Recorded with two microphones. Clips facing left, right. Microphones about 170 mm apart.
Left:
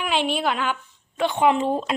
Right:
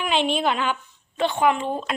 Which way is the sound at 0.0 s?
5° left (ahead or behind).